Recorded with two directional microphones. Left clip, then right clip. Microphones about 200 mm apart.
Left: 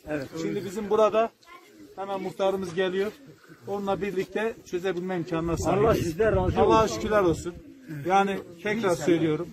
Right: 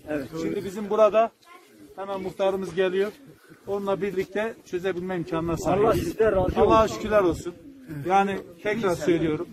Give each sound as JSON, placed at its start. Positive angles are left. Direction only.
{"t": 0.7, "sound": "a man's voice", "side_deg": -5}
{"t": 3.6, "sound": "a man's voice", "side_deg": 10}
{"t": 5.8, "sound": "a man's voice", "side_deg": -65}
{"t": 6.6, "sound": "a man's voice", "side_deg": 0}